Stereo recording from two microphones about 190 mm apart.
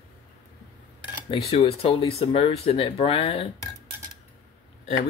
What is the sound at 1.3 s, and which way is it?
Speech, 30° left (ahead or behind).